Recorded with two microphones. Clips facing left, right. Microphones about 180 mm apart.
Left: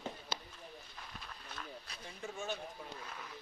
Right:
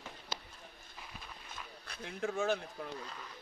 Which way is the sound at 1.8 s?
75° right (ahead or behind).